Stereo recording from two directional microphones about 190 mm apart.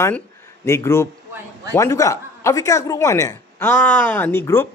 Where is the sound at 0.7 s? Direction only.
15° left (ahead or behind).